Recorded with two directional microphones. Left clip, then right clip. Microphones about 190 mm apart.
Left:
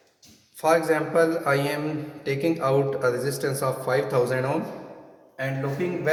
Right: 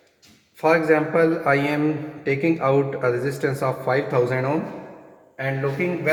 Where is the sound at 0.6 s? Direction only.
35° right (ahead or behind).